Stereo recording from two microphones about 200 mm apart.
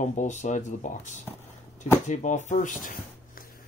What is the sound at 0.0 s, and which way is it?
Speech, 40° left (ahead or behind).